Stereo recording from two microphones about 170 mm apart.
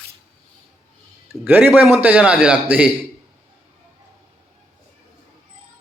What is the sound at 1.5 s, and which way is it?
A man's voice, 10° right (ahead or behind).